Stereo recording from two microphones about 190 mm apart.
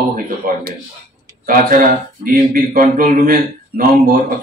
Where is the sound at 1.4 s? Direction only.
45° right (ahead or behind).